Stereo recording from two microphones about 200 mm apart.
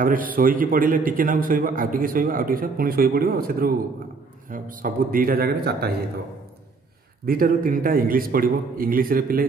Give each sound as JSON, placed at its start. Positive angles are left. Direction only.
{"t": 0.0, "sound": "a man's voice", "side_deg": -45}
{"t": 7.2, "sound": "a man's voice", "side_deg": -45}